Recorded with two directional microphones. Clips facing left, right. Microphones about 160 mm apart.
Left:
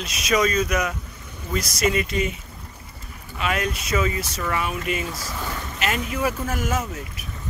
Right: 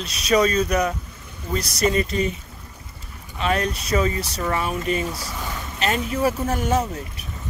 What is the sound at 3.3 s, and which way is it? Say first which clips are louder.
Speech: right 2 dB; 35° right (ahead or behind).